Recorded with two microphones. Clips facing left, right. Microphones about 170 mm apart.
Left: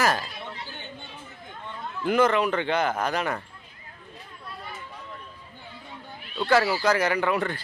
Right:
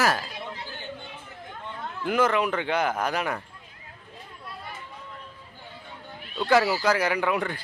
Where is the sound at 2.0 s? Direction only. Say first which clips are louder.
Left 2 dB; 5° right (ahead or behind).